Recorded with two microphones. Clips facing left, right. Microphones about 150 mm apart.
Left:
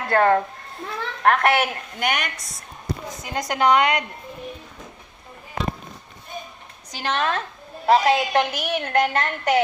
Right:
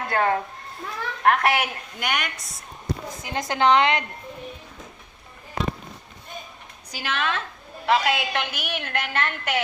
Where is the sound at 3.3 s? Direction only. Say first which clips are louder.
Left 1 dB; 25° right (ahead or behind).